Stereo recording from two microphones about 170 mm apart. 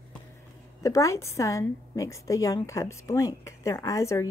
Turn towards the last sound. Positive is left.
turn(degrees=20)  # may be behind; listen again after turning